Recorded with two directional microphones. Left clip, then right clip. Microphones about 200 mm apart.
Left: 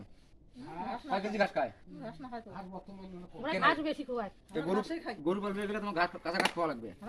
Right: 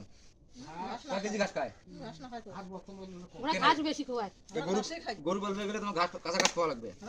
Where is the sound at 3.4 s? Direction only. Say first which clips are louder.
Right 2 dB; 50° right (ahead or behind).